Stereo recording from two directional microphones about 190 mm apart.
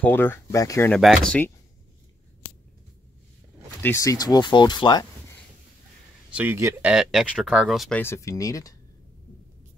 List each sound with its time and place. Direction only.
0.0 s speech: 10° left (ahead or behind)
0.9 s speech: centre (ahead or behind)
3.8 s speech: 15° left (ahead or behind)
6.3 s speech: 10° right (ahead or behind)
8.0 s speech: 15° left (ahead or behind)